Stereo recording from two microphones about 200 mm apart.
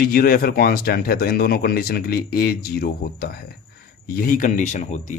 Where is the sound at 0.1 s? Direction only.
45° left (ahead or behind).